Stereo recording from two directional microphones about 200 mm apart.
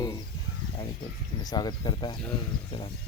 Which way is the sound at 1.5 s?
20° left (ahead or behind).